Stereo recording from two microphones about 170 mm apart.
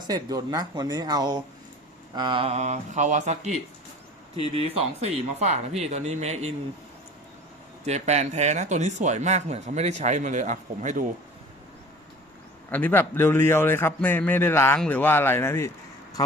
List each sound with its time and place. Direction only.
0.0 s speech: 20° right (ahead or behind); by 6.5 s 40° right (ahead or behind)
7.9 s speech: 40° right (ahead or behind)
12.7 s a man's voice: 10° left (ahead or behind)